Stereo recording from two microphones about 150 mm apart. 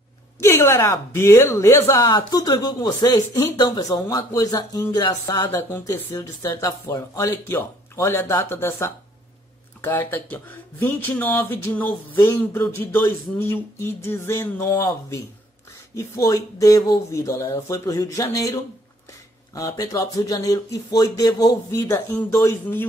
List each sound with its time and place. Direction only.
0.4 s speech: 15° left (ahead or behind)
5.5 s speech: 15° left (ahead or behind)